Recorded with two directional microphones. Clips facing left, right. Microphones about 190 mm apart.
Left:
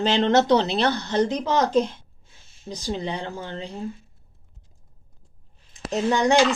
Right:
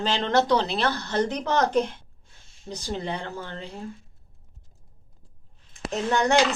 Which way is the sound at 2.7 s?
15° left (ahead or behind).